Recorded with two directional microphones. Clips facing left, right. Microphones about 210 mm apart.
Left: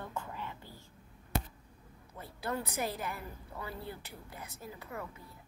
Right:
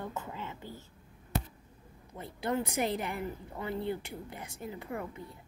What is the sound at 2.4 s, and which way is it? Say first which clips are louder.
A woman's voice: right 5 dB; 25° right (ahead or behind).